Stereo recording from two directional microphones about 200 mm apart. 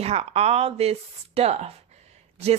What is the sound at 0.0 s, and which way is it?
A woman's voice, 30° right (ahead or behind).